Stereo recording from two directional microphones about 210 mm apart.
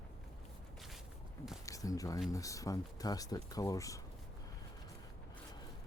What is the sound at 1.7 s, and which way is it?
Speech, 15° left (ahead or behind).